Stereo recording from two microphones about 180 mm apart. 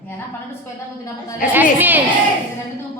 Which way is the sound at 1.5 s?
10° right (ahead or behind).